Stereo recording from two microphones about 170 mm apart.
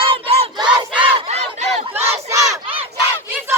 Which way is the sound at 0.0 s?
35° right (ahead or behind).